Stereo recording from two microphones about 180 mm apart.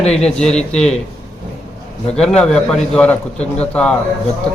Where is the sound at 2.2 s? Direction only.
5° left (ahead or behind).